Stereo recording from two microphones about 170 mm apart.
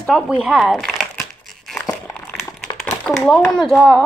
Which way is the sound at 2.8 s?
Centre (ahead or behind).